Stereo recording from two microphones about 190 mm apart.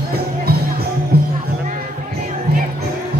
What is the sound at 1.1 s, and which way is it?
Music, 55° right (ahead or behind).